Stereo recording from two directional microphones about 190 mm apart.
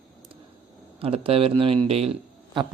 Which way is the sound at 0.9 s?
30° right (ahead or behind).